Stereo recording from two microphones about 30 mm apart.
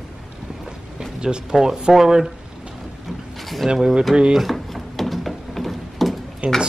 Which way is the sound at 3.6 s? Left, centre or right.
Centre.